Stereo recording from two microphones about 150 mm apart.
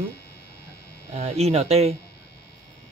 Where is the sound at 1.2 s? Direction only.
45° right (ahead or behind).